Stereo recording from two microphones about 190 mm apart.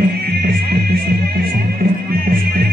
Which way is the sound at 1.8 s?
50° right (ahead or behind).